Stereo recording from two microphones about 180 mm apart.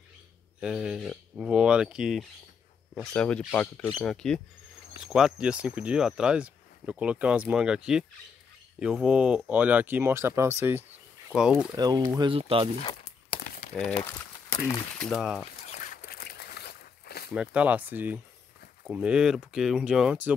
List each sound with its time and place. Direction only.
0.6 s speech: 5° right (ahead or behind)
11.3 s speech: 5° right (ahead or behind)
11.7 s speech: 20° right (ahead or behind)
13.7 s speech: 5° left (ahead or behind)
15.0 s speech: centre (ahead or behind)
15.6 s a sound: 45° left (ahead or behind); by 17.3 s 60° left (ahead or behind)
17.3 s speech: 5° right (ahead or behind)